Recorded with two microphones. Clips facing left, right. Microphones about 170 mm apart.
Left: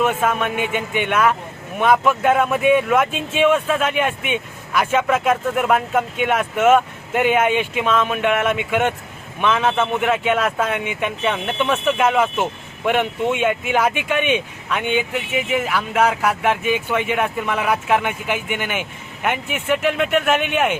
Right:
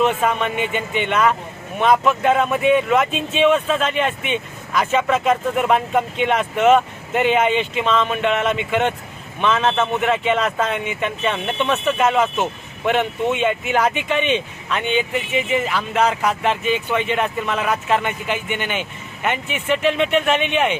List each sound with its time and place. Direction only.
0.0 s speech: 5° left (ahead or behind)